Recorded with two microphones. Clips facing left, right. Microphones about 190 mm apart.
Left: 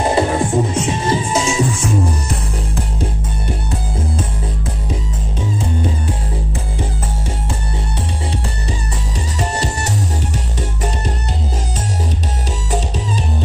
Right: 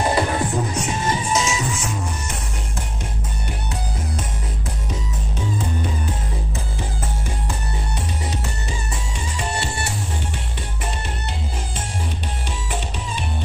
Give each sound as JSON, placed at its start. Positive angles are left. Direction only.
{"t": 0.0, "sound": "music", "side_deg": 25}